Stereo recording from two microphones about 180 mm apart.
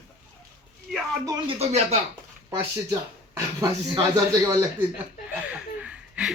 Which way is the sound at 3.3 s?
25° right (ahead or behind).